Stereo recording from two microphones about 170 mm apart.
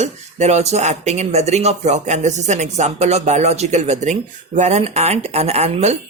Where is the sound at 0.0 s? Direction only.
40° right (ahead or behind).